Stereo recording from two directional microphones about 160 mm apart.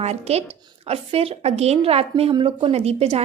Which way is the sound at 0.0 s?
40° right (ahead or behind).